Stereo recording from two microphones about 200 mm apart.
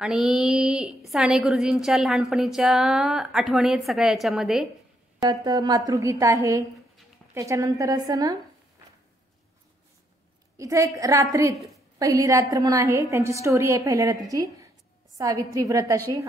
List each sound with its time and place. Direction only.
0.0 s a woman's voice: 5° right (ahead or behind)
5.2 s a woman's voice: 20° right (ahead or behind)
10.6 s a woman's voice: 15° right (ahead or behind)